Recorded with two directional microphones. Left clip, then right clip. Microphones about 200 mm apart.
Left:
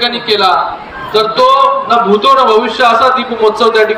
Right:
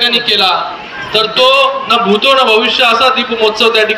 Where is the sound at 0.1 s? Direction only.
60° left (ahead or behind).